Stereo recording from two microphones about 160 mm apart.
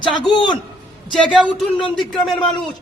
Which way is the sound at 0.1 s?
30° left (ahead or behind).